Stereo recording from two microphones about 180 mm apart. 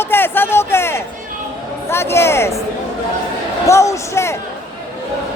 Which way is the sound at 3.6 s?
15° left (ahead or behind).